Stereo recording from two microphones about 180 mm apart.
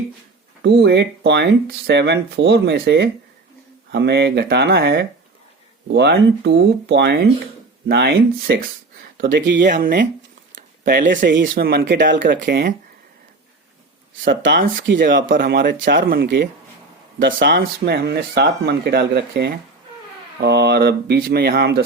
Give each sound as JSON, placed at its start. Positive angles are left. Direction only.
{"t": 0.6, "sound": "speech", "side_deg": -70}
{"t": 9.6, "sound": "speech", "side_deg": -50}
{"t": 10.5, "sound": "a sound", "side_deg": -50}
{"t": 11.5, "sound": "speech", "side_deg": -55}
{"t": 12.4, "sound": "speech", "side_deg": -60}
{"t": 14.3, "sound": "speech", "side_deg": -75}
{"t": 14.9, "sound": "speech", "side_deg": -50}
{"t": 16.0, "sound": "speech", "side_deg": -55}
{"t": 16.2, "sound": "speech", "side_deg": -70}